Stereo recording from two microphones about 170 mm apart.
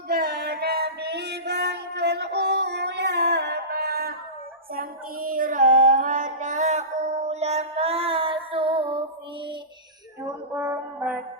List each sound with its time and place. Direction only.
0.1 s music: 65° right (ahead or behind)
4.7 s child singing: 60° right (ahead or behind); by 8.8 s 30° right (ahead or behind)
10.5 s a sound: 15° right (ahead or behind)